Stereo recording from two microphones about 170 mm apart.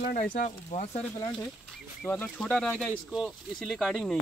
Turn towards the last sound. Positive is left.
turn(degrees=0)  # may be behind; listen again after turning